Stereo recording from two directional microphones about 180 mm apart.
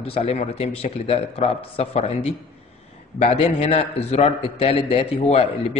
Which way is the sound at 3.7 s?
35° left (ahead or behind).